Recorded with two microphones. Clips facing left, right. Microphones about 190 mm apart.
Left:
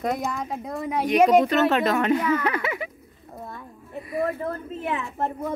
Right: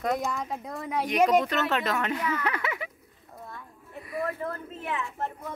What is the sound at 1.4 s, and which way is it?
Speech, 40° left (ahead or behind).